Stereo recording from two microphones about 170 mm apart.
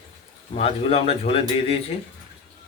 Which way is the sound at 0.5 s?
35° left (ahead or behind).